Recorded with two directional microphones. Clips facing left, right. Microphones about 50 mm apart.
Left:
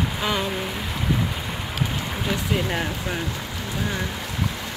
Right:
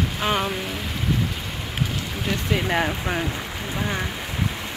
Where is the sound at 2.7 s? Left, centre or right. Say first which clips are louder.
Right 3 dB; right.